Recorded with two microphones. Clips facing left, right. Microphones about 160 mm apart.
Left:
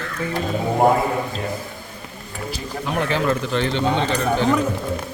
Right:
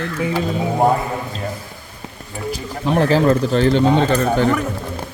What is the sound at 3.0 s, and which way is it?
Speech, 35° right (ahead or behind).